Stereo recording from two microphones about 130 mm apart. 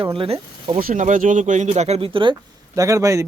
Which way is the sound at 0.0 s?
45° right (ahead or behind).